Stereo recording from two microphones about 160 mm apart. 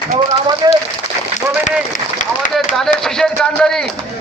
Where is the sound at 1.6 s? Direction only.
50° left (ahead or behind).